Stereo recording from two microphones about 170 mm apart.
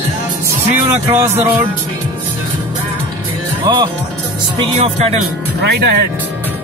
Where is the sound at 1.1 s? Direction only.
15° right (ahead or behind).